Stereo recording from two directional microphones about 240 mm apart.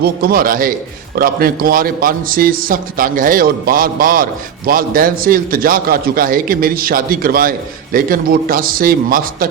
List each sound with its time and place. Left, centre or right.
0.0 s a man's voice: right